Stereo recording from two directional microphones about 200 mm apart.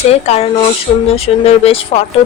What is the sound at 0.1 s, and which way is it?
A woman's voice, 30° left (ahead or behind).